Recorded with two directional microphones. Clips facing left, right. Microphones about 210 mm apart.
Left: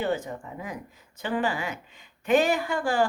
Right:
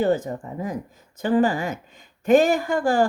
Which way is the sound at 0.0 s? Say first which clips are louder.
Right 7 dB; 40° right (ahead or behind).